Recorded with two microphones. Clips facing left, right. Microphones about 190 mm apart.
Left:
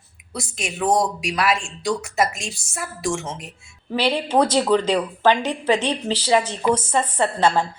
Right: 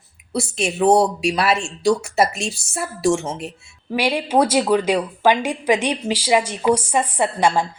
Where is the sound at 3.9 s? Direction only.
10° right (ahead or behind).